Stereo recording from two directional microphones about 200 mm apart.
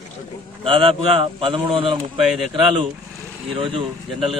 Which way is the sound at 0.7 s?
25° right (ahead or behind).